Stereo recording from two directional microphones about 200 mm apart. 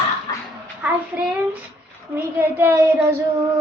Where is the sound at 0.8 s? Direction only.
5° right (ahead or behind).